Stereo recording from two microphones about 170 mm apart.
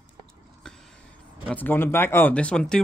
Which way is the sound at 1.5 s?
10° left (ahead or behind).